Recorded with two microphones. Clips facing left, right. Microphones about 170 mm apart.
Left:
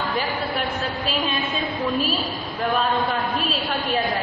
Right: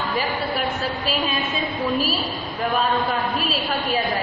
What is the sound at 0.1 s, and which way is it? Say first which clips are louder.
A woman's voice: right 1 dB; centre (ahead or behind).